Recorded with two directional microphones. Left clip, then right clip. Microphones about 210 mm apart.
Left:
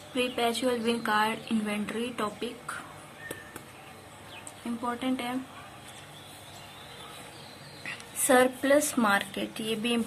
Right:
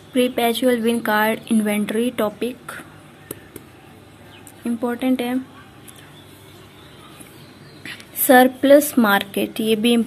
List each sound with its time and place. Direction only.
0.1 s speech: 20° right (ahead or behind)
4.8 s speech: 25° right (ahead or behind)
7.8 s speech: 20° right (ahead or behind)